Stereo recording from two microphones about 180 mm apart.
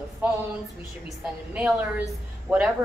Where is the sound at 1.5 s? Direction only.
5° right (ahead or behind).